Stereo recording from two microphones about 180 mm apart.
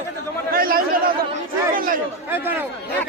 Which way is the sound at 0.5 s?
55° right (ahead or behind).